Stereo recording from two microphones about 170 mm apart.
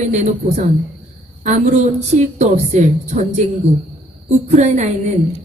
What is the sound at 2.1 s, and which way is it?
A woman's voice, 40° right (ahead or behind).